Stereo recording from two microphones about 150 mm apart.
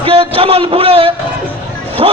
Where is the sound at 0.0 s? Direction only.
35° right (ahead or behind).